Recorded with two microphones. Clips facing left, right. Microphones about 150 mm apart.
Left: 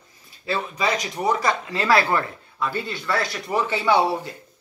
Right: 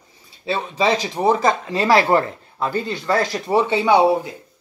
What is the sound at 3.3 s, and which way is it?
Speech, 25° right (ahead or behind).